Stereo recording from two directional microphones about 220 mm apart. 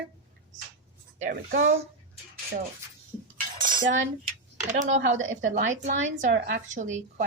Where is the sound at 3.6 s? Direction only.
35° right (ahead or behind).